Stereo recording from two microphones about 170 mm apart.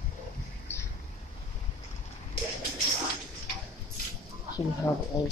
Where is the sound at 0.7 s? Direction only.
15° left (ahead or behind).